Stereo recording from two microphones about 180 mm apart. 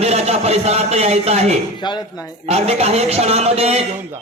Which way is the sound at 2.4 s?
35° right (ahead or behind).